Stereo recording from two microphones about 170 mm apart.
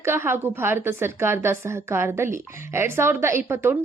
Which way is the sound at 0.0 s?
15° right (ahead or behind).